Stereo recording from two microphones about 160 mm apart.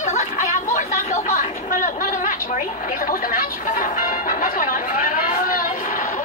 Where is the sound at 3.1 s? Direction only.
60° left (ahead or behind).